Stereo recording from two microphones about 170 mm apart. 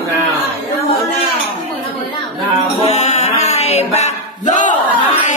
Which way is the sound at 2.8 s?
40° left (ahead or behind).